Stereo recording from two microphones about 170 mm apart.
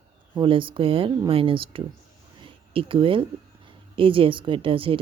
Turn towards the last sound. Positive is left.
turn(degrees=-30)  # may be behind; listen again after turning